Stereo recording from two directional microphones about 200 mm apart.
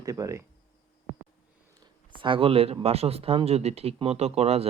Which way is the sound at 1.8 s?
20° right (ahead or behind).